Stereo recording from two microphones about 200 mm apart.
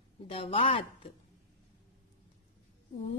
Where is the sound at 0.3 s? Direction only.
30° left (ahead or behind).